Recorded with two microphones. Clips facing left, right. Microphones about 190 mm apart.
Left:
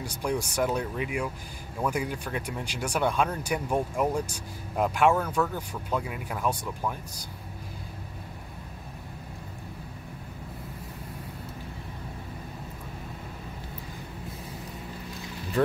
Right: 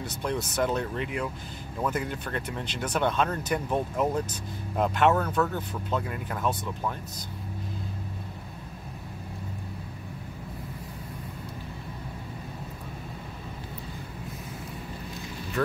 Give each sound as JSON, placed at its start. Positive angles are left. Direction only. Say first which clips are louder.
{"t": 0.0, "sound": "speech", "louder": "left 1 dB", "side_deg": 10}